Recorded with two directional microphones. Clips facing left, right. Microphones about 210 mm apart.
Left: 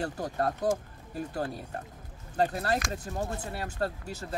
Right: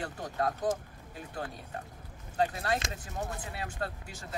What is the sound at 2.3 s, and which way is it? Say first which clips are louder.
Speech: left 3 dB; 40° left (ahead or behind).